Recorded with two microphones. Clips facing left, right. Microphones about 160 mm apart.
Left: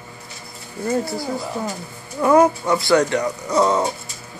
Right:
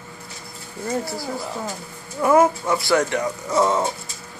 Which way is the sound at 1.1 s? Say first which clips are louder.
Left 3 dB; 20° left (ahead or behind).